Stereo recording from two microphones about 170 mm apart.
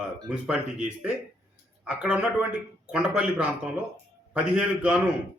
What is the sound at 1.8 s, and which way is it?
A man's voice, 5° right (ahead or behind).